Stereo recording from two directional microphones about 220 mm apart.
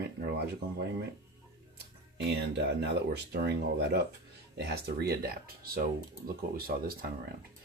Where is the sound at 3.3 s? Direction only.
50° right (ahead or behind).